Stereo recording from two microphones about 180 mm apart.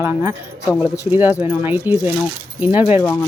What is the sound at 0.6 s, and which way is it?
Speech, 15° left (ahead or behind).